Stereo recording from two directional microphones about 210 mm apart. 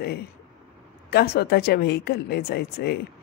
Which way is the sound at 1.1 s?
50° left (ahead or behind).